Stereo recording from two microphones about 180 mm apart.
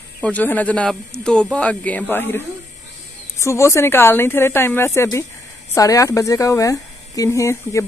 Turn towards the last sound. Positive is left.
turn(degrees=15)  # may be behind; listen again after turning